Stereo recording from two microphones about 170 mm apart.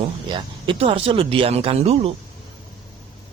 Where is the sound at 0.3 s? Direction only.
30° right (ahead or behind).